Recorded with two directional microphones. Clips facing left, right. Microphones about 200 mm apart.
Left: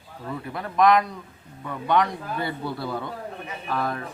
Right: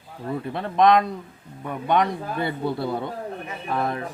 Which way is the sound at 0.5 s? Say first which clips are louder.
Right 1 dB; 25° right (ahead or behind).